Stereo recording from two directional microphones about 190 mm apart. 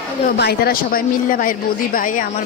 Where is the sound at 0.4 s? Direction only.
55° left (ahead or behind).